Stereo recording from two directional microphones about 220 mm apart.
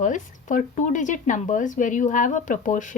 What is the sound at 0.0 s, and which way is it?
A woman's voice, 35° left (ahead or behind).